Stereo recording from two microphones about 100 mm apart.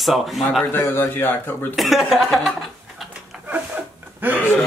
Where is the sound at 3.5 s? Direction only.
20° right (ahead or behind).